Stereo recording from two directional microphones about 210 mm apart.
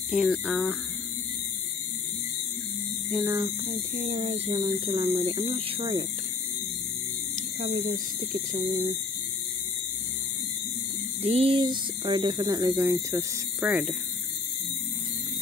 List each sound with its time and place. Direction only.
0.1 s speech: centre (ahead or behind)
3.1 s speech: 15° right (ahead or behind)
3.6 s speech: 35° right (ahead or behind)
7.3 s speech: 35° right (ahead or behind)
11.2 s speech: 30° right (ahead or behind); by 13.9 s 5° right (ahead or behind)